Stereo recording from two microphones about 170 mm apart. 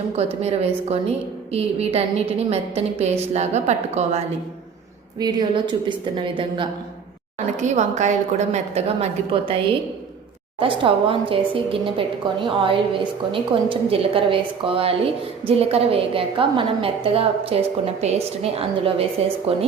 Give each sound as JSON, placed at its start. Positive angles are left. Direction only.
{"t": 0.2, "sound": "a woman's voice", "side_deg": -40}
{"t": 5.2, "sound": "a woman's voice", "side_deg": -25}
{"t": 7.3, "sound": "a woman's voice", "side_deg": -45}
{"t": 10.6, "sound": "a woman's voice", "side_deg": -30}